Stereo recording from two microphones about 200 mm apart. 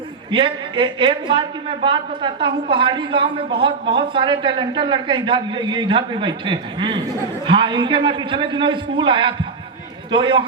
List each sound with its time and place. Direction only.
0.3 s a woman's voice: 25° right (ahead or behind)